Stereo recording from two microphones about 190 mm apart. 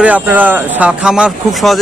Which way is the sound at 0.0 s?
10° right (ahead or behind).